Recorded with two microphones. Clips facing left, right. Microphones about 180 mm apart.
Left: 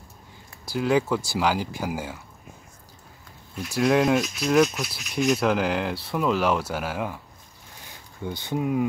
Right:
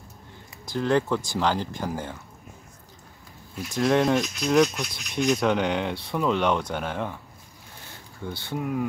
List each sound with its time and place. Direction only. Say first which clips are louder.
0.7 s speech: left 1 dB; 10° left (ahead or behind)
3.7 s speech: left 1 dB; 5° left (ahead or behind)
8.2 s speech: left 3 dB; 15° left (ahead or behind)